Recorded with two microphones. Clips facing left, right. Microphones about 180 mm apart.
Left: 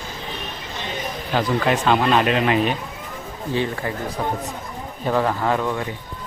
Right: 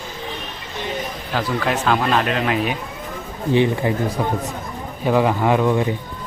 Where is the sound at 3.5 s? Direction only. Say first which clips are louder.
Right 6 dB; 20° right (ahead or behind).